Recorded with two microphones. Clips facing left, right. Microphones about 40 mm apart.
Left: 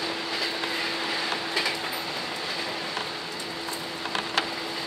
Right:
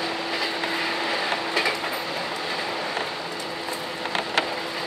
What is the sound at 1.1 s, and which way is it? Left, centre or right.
Train, centre.